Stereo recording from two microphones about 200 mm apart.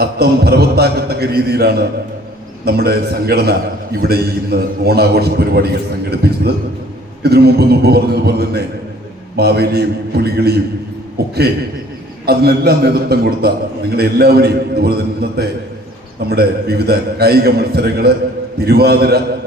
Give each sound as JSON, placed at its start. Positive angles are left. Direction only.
{"t": 0.0, "sound": "a man's voice", "side_deg": -50}
{"t": 11.2, "sound": "a sound", "side_deg": -55}
{"t": 12.2, "sound": "a man's voice", "side_deg": -50}